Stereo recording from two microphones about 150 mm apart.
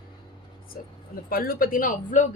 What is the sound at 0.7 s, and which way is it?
A woman's voice, 75° left (ahead or behind).